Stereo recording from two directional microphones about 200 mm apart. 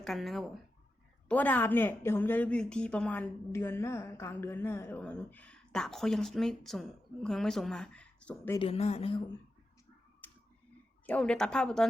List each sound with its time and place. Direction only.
0.0 s a woman's voice: centre (ahead or behind)
8.5 s speech: 30° left (ahead or behind)
10.2 s a sound: 10° left (ahead or behind)
11.0 s a woman's voice: 5° left (ahead or behind)